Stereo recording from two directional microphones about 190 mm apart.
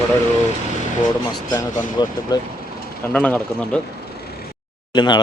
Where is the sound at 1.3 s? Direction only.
20° left (ahead or behind).